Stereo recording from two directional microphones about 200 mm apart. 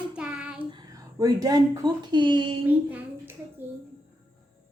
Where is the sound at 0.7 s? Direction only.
20° right (ahead or behind).